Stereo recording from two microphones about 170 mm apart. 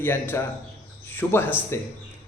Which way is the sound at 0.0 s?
15° left (ahead or behind).